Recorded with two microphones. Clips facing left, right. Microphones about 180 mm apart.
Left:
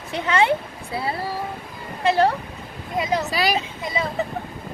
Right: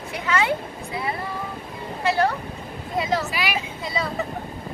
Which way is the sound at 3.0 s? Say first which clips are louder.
Left 1 dB; 20° left (ahead or behind).